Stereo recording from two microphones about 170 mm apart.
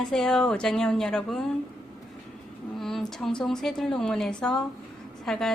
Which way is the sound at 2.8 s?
Centre (ahead or behind).